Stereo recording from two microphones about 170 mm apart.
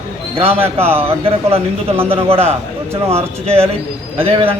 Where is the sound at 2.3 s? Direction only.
35° right (ahead or behind).